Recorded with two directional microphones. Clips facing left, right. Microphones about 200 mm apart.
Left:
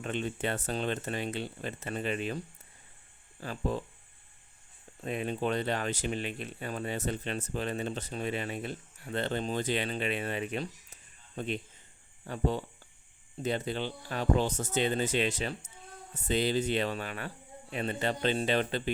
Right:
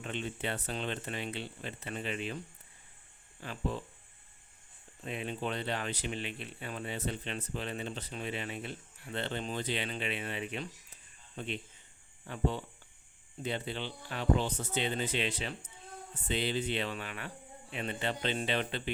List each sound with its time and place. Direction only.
0.0 s speech: 45° left (ahead or behind)
3.4 s speech: 40° left (ahead or behind)
5.0 s speech: 45° left (ahead or behind)